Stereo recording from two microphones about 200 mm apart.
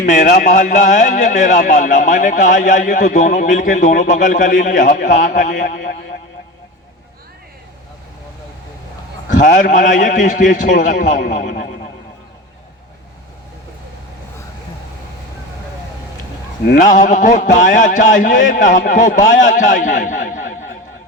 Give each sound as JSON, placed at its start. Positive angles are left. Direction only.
{"t": 0.0, "sound": "speech", "side_deg": 40}
{"t": 9.4, "sound": "speech", "side_deg": 40}
{"t": 16.6, "sound": "speech", "side_deg": 45}